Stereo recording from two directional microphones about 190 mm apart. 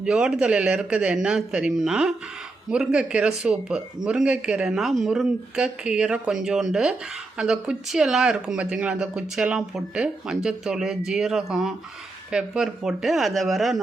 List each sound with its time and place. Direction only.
0.0 s speech: 5° right (ahead or behind)